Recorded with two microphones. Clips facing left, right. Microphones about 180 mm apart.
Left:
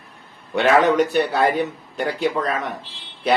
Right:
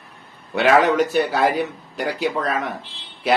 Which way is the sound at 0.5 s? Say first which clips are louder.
Even; centre (ahead or behind).